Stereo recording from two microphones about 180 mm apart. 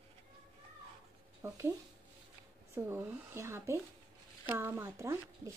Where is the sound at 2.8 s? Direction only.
15° right (ahead or behind).